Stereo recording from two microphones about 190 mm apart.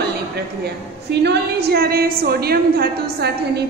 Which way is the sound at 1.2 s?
60° right (ahead or behind).